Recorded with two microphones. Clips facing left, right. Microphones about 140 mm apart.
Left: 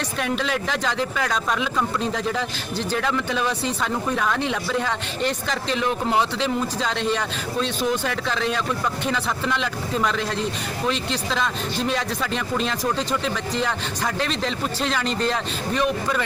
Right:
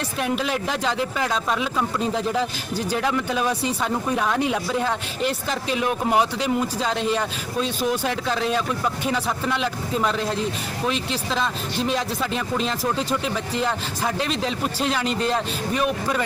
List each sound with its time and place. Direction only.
0.2 s a man's voice: 5° right (ahead or behind)